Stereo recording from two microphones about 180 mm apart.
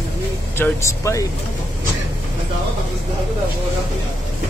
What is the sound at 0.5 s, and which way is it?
Speech, 15° left (ahead or behind).